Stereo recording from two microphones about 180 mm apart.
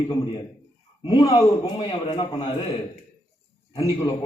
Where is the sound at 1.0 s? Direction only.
25° left (ahead or behind).